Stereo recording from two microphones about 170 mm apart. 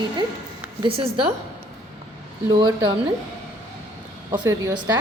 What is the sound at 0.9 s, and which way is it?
Speech, 35° right (ahead or behind).